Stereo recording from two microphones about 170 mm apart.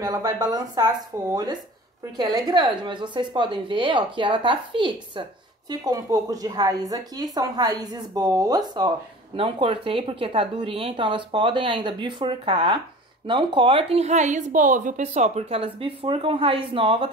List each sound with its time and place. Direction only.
0.0 s a woman's voice: 20° right (ahead or behind)